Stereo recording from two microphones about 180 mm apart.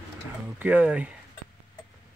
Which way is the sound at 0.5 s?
10° right (ahead or behind).